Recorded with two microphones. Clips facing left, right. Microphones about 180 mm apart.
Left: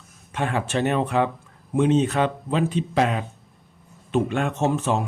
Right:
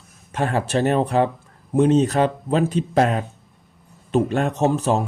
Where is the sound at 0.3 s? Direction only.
40° right (ahead or behind).